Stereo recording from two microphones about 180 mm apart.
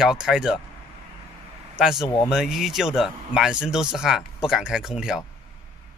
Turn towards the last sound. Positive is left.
turn(degrees=-5)  # may be behind; listen again after turning